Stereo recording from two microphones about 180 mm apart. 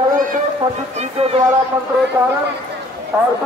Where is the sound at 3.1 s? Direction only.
10° right (ahead or behind).